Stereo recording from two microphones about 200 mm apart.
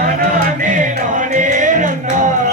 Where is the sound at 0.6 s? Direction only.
40° right (ahead or behind).